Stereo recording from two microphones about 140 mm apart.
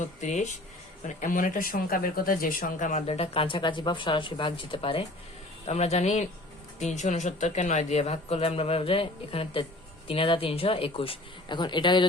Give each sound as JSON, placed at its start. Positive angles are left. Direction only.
{"t": 0.0, "sound": "speech", "side_deg": 60}
{"t": 5.6, "sound": "speech", "side_deg": 50}